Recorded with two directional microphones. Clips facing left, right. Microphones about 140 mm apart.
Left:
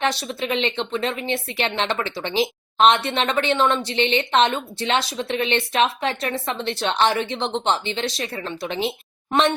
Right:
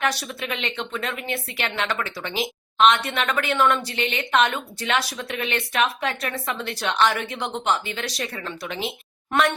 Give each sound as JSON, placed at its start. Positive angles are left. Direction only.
{"t": 0.0, "sound": "a woman's voice", "side_deg": 25}